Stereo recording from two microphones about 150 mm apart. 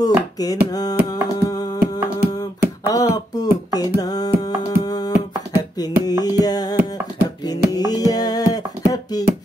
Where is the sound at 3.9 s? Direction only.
25° left (ahead or behind).